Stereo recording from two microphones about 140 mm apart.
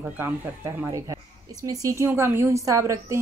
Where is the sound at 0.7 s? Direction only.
20° right (ahead or behind).